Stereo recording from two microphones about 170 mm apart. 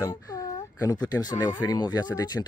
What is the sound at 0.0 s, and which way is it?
Speech, 20° left (ahead or behind).